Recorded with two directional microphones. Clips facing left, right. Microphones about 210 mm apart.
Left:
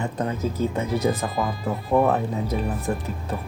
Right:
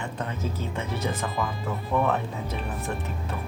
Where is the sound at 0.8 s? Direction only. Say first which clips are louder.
Left 5 dB; 35° left (ahead or behind).